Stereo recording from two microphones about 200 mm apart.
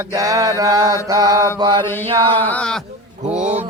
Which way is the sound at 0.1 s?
15° right (ahead or behind).